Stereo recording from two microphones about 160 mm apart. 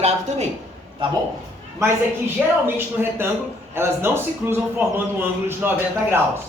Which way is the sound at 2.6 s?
15° right (ahead or behind).